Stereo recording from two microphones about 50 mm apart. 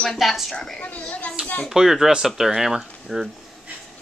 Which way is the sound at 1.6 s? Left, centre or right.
Centre.